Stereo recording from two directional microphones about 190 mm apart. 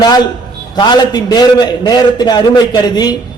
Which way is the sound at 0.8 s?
20° left (ahead or behind).